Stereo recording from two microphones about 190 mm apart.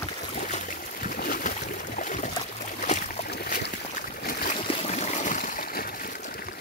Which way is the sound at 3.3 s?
55° left (ahead or behind).